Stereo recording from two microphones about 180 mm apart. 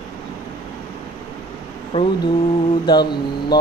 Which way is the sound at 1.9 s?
35° left (ahead or behind).